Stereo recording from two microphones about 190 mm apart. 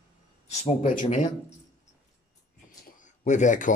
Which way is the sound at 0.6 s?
40° left (ahead or behind).